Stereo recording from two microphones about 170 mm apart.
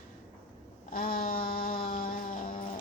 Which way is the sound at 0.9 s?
60° left (ahead or behind).